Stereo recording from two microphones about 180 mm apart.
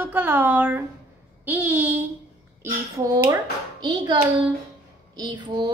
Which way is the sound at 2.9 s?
20° right (ahead or behind).